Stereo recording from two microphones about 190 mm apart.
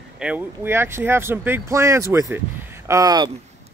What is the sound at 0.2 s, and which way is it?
Speech, 5° right (ahead or behind).